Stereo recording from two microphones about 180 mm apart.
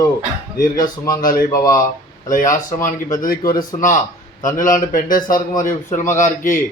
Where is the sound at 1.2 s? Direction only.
50° left (ahead or behind).